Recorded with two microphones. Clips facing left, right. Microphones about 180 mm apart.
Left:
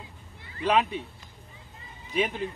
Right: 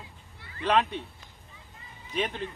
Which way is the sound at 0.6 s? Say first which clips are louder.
Left 1 dB; 5° left (ahead or behind).